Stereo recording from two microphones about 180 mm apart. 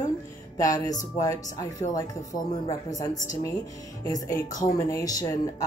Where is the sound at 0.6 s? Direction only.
20° left (ahead or behind).